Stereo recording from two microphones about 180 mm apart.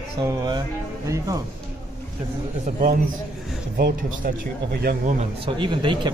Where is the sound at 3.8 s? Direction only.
60° right (ahead or behind).